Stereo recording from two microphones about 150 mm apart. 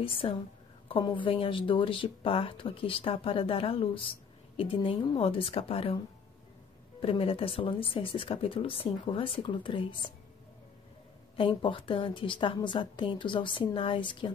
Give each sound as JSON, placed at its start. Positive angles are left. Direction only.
{"t": 0.0, "sound": "speech", "side_deg": 35}
{"t": 7.0, "sound": "speech", "side_deg": 40}
{"t": 11.3, "sound": "speech", "side_deg": 35}